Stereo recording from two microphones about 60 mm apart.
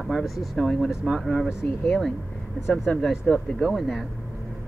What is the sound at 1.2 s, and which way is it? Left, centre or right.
Speech, centre.